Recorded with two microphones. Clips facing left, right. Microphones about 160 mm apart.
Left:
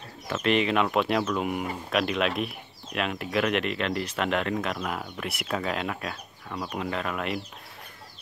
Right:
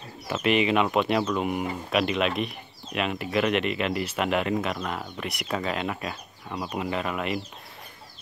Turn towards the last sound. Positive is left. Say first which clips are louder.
# right 2 dB
turn(degrees=0)  # may be behind; listen again after turning